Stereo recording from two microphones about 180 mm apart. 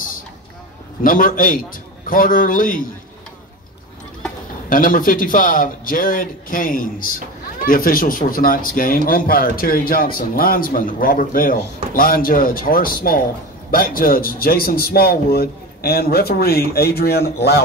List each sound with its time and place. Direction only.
1.0 s speech: 50° left (ahead or behind)
4.6 s speech: 50° left (ahead or behind)